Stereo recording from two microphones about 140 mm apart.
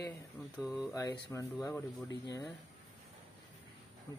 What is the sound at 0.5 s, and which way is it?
Speech, 5° right (ahead or behind).